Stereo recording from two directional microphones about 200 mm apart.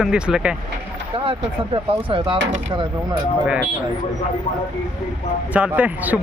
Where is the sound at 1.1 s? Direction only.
25° right (ahead or behind).